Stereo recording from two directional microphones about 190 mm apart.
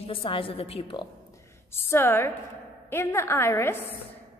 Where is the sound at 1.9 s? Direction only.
10° left (ahead or behind).